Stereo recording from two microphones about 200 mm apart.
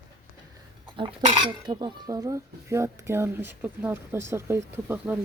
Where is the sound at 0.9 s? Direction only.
25° right (ahead or behind).